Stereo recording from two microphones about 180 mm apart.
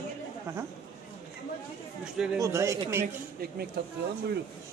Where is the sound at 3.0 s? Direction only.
55° right (ahead or behind).